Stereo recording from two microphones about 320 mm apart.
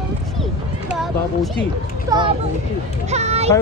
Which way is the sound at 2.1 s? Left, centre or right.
Centre.